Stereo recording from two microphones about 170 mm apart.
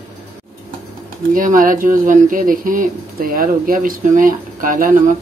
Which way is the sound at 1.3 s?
50° right (ahead or behind).